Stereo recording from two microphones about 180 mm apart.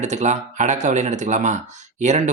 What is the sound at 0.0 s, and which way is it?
Speech, 40° right (ahead or behind).